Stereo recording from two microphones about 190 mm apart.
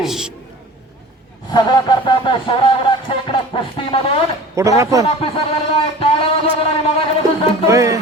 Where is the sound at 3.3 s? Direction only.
25° left (ahead or behind).